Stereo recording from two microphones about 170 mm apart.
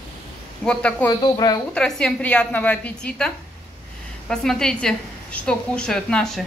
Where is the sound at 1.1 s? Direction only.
25° left (ahead or behind).